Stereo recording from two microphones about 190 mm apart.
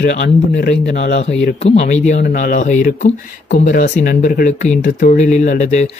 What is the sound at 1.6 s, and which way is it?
Speech, 35° left (ahead or behind).